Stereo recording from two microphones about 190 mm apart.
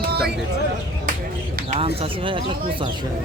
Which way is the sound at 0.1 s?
55° right (ahead or behind).